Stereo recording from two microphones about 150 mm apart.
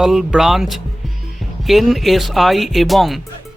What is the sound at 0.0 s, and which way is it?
Speech, 5° right (ahead or behind).